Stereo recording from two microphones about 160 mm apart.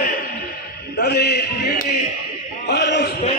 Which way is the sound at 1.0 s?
90° left.